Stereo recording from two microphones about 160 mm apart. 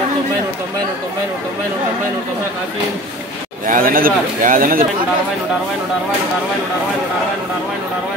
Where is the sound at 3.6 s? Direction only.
60° right (ahead or behind).